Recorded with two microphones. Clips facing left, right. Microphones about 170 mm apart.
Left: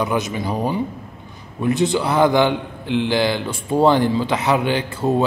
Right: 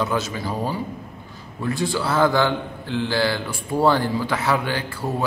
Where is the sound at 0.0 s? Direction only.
15° left (ahead or behind).